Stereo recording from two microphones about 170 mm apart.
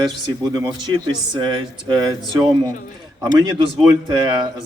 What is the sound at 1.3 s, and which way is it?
Speech, 25° right (ahead or behind).